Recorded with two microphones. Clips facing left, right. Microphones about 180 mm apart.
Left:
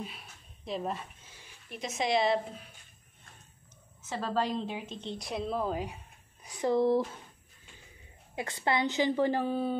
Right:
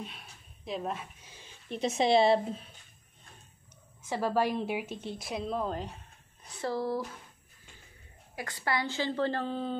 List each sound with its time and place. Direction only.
0.0 s a sound: centre (ahead or behind)
1.2 s speech: 20° right (ahead or behind)
4.1 s a woman's voice: 10° right (ahead or behind); by 7.1 s 25° left (ahead or behind)
8.4 s a woman's voice: 20° left (ahead or behind)